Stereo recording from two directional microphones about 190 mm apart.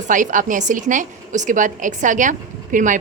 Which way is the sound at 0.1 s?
45° right (ahead or behind).